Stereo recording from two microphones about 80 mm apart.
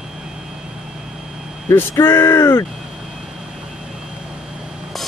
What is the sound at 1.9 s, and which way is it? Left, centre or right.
Speech, left.